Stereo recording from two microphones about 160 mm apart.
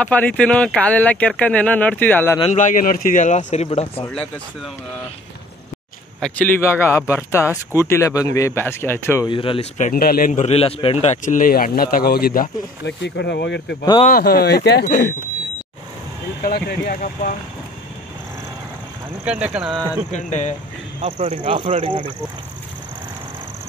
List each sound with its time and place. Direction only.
0.0 s speech: 10° left (ahead or behind)
2.5 s speech: 55° left (ahead or behind); by 3.9 s 40° left (ahead or behind)
6.2 s speech: 10° left (ahead or behind)
9.3 s speech: 35° left (ahead or behind)
9.8 s speech: 60° left (ahead or behind)
10.4 s speech: 40° left (ahead or behind); by 13.7 s 90° left
14.0 s speech: 70° left (ahead or behind); by 15.1 s 85° left
16.4 s speech: 65° left (ahead or behind)
19.2 s speech: 10° right (ahead or behind)
20.1 s speech: 45° left (ahead or behind)
21.0 s speech: 45° right (ahead or behind)